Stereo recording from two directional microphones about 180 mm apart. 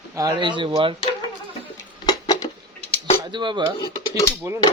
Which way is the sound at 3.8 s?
20° left (ahead or behind).